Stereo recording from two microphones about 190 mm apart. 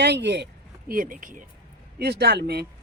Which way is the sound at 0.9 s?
45° right (ahead or behind).